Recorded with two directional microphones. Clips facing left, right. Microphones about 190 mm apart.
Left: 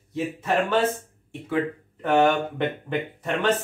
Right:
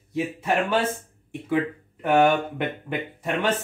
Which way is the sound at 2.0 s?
10° right (ahead or behind).